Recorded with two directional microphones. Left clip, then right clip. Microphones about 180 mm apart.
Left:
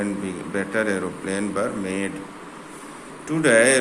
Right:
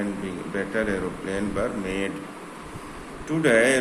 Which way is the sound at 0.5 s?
35° left (ahead or behind).